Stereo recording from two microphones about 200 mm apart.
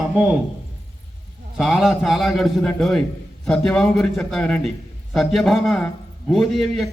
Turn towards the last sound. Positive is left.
turn(degrees=0)  # may be behind; listen again after turning